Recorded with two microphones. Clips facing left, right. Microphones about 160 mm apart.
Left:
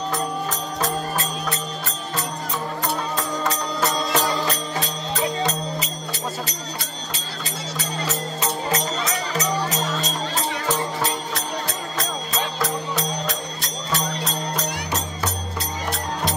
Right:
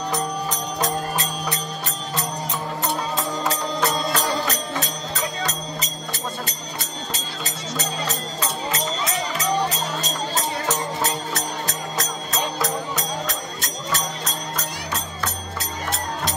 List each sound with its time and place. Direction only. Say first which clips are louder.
4.1 s music: left 1 dB; 40° right (ahead or behind)